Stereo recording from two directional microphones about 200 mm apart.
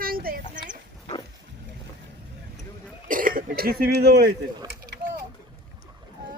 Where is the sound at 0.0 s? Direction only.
45° right (ahead or behind).